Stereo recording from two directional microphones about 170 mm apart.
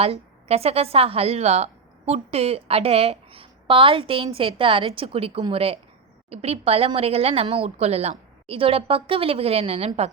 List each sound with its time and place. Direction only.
0.0 s a woman's voice: 35° right (ahead or behind)